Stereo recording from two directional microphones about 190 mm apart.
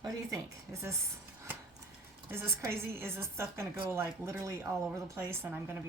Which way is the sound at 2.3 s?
15° right (ahead or behind).